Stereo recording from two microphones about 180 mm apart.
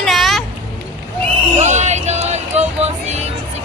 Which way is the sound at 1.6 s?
40° right (ahead or behind).